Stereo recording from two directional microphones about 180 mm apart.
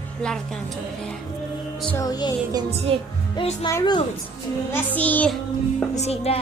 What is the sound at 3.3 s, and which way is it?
Speech, 25° left (ahead or behind).